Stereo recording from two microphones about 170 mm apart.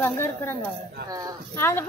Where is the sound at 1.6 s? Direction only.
15° left (ahead or behind).